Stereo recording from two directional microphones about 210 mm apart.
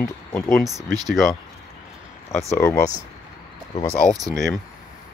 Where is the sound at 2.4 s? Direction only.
15° left (ahead or behind).